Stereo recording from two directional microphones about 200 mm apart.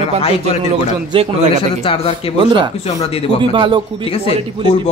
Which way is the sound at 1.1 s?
25° right (ahead or behind).